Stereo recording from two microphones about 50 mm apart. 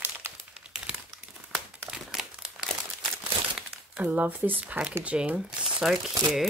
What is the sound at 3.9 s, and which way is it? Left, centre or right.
Speech, right.